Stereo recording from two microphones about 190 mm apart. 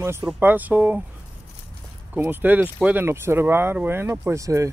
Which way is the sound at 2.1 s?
10° right (ahead or behind).